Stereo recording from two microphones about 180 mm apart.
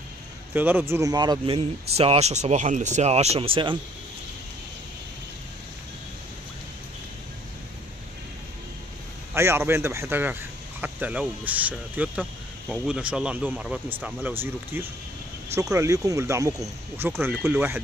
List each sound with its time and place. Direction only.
0.6 s speech: 10° right (ahead or behind); by 3.7 s 30° right (ahead or behind)
9.3 s speech: 15° right (ahead or behind)